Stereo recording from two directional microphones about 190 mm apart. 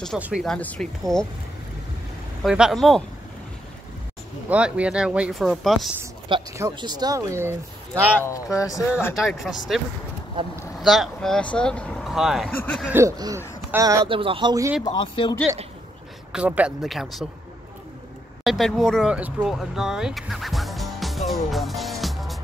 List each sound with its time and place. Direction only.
0.2 s speech: centre (ahead or behind)
2.4 s speech: 5° right (ahead or behind)
4.5 s speech: 5° right (ahead or behind)
6.2 s speech: 20° right (ahead or behind)
8.5 s speech: 20° left (ahead or behind)
9.1 s speech: centre (ahead or behind)
10.4 s speech: 25° right (ahead or behind)
10.8 s speech: centre (ahead or behind)
12.8 s speech: 15° right (ahead or behind)
14.0 s speech: 25° right (ahead or behind)
14.9 s speech: 25° left (ahead or behind)
16.3 s speech: 5° right (ahead or behind)
18.4 s speech: centre (ahead or behind)